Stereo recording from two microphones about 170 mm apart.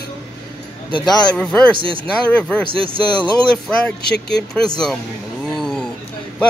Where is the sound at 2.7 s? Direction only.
30° right (ahead or behind).